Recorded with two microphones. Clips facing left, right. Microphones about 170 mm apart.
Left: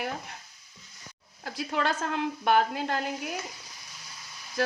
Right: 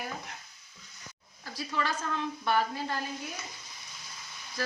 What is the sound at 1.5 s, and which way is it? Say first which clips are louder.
Frying: left 4 dB; 60° left (ahead or behind).